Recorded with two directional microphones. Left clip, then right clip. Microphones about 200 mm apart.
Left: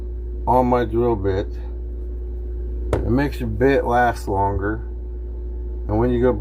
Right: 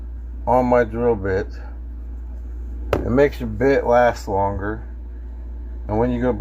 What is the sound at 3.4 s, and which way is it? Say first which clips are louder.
Speech: even; 30° right (ahead or behind).